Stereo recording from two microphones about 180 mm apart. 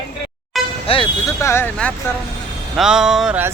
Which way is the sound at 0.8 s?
30° left (ahead or behind).